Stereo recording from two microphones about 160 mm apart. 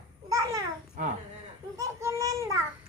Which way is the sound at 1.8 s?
20° right (ahead or behind).